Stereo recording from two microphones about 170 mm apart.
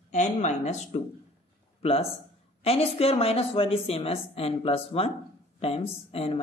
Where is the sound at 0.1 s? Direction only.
45° left (ahead or behind).